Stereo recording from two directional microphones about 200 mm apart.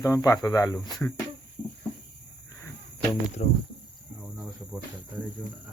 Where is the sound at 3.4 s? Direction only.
35° left (ahead or behind).